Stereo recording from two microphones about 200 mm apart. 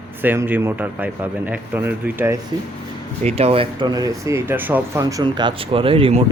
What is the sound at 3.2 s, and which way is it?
Speech, 30° right (ahead or behind).